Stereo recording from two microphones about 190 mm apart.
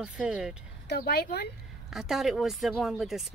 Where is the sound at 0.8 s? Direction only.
55° left (ahead or behind).